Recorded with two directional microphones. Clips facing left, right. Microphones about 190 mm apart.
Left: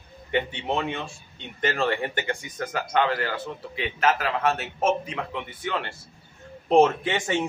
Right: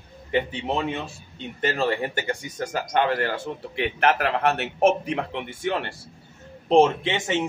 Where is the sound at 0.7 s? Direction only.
5° right (ahead or behind).